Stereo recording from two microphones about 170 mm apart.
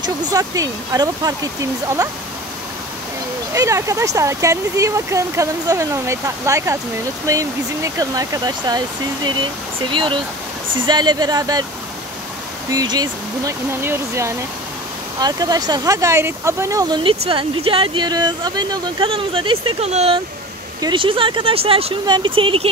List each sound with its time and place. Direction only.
0.0 s speech: 20° right (ahead or behind)
3.5 s speech: 15° right (ahead or behind)
12.7 s speech: 25° right (ahead or behind)